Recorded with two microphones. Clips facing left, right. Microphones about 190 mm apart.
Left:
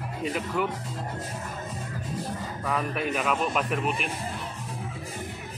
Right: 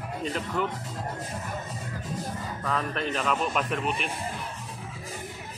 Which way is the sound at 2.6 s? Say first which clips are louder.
Left 1 dB; 10° left (ahead or behind).